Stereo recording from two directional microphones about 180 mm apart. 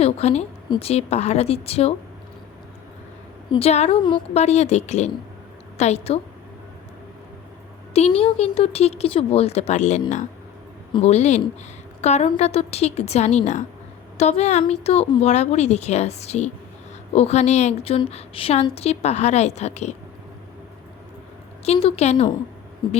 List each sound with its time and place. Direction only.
0.0 s a woman's voice: 35° left (ahead or behind)
3.5 s a woman's voice: 35° left (ahead or behind)
7.9 s a woman's voice: 35° left (ahead or behind)
21.6 s a woman's voice: 35° left (ahead or behind)